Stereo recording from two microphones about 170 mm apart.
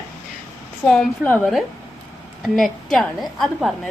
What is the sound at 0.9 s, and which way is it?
A woman's voice, 5° left (ahead or behind).